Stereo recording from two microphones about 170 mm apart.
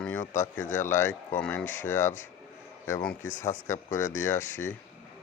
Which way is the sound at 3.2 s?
45° left (ahead or behind).